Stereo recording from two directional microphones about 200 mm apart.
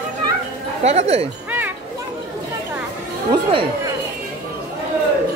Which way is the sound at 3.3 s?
25° right (ahead or behind).